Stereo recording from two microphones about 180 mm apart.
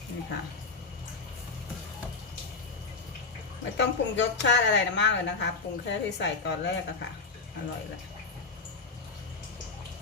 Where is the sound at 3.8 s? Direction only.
80° left.